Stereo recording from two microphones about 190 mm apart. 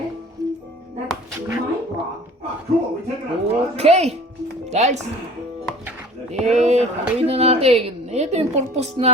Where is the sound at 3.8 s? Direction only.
35° right (ahead or behind).